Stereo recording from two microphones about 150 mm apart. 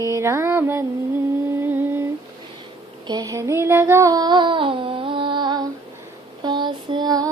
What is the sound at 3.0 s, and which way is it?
Child singing, 25° right (ahead or behind).